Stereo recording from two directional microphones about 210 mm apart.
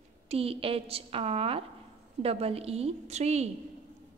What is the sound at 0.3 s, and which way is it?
A woman's voice, 25° right (ahead or behind).